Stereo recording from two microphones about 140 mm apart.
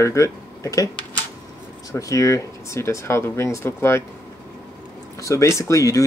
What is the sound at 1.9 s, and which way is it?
Speech, 25° left (ahead or behind).